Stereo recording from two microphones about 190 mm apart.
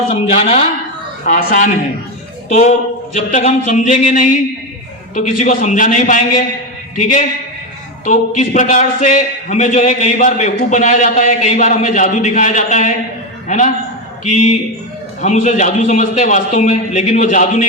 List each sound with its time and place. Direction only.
0.1 s a man's voice: 35° left (ahead or behind)
15.2 s a man's voice: 40° left (ahead or behind)